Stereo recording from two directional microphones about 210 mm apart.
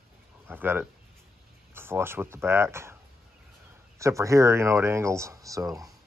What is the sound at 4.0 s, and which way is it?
Speech, 15° right (ahead or behind).